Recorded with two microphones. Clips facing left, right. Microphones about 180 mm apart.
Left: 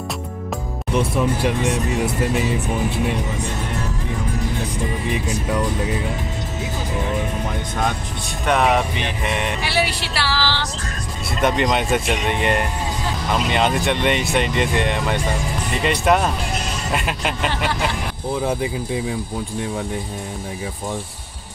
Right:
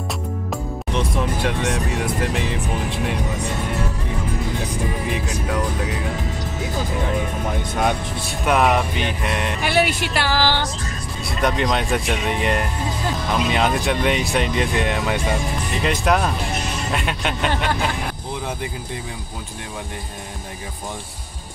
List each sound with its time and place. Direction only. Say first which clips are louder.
0.9 s speech: left 4 dB; 5° left (ahead or behind)
8.5 s speech: even; centre (ahead or behind)
9.6 s speech: right 3 dB; 50° right (ahead or behind)
11.4 s speech: left 2 dB; centre (ahead or behind)